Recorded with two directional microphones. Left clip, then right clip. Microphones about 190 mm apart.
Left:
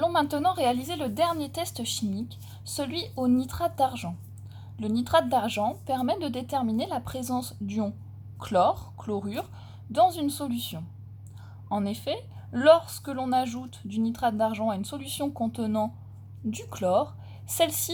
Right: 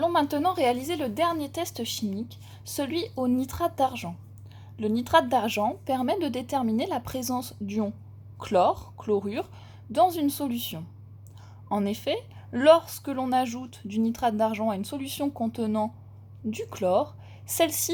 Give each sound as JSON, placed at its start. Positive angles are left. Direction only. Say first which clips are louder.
{"t": 0.0, "sound": "a woman's voice", "louder": "even", "side_deg": -15}